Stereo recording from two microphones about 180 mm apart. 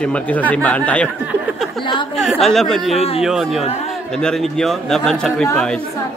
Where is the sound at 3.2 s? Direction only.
Centre (ahead or behind).